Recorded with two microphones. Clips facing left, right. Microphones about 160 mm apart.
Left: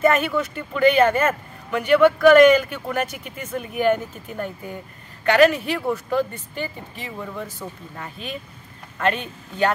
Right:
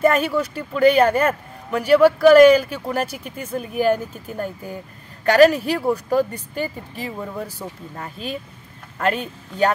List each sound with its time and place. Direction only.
0.0 s speech: 35° right (ahead or behind)